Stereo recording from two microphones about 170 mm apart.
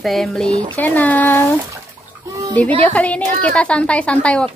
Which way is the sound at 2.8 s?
10° left (ahead or behind).